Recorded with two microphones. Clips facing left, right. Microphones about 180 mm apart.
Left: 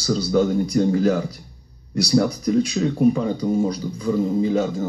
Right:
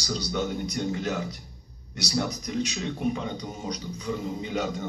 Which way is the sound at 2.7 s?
45° left (ahead or behind).